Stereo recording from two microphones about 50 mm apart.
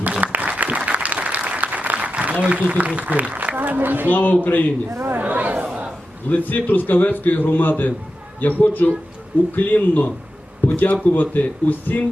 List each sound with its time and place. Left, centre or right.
0.2 s applause: right
4.1 s a man's voice: left
5.2 s chatter: right
5.6 s a sound: right
6.2 s a man's voice: left